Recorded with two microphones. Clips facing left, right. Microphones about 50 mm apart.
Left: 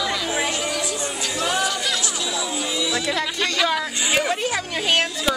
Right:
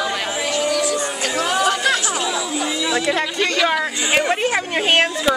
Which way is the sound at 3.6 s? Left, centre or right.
Right.